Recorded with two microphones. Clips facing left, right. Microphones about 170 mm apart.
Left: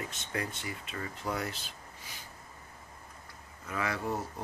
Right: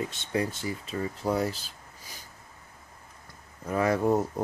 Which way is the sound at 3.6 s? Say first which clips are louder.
Right 10 dB; 40° right (ahead or behind).